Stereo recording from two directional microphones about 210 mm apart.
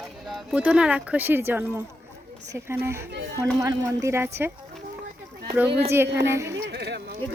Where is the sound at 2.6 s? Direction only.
10° right (ahead or behind).